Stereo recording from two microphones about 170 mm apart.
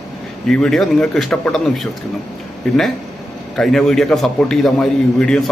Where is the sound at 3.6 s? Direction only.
Centre (ahead or behind).